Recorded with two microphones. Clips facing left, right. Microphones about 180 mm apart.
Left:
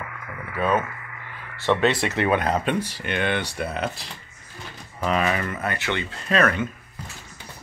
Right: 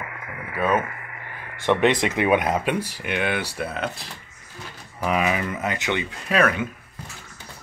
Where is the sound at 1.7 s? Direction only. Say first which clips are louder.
Right 2 dB; 15° right (ahead or behind); by 4.1 s centre (ahead or behind).